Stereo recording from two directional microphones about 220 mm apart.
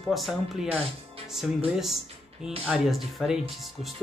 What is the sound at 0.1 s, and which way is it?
Speech, centre (ahead or behind).